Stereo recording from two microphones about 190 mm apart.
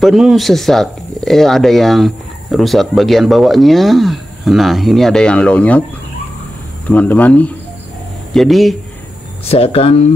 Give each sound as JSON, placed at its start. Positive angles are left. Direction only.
{"t": 0.0, "sound": "speech", "side_deg": 0}
{"t": 6.9, "sound": "speech", "side_deg": 10}
{"t": 9.5, "sound": "speech", "side_deg": 30}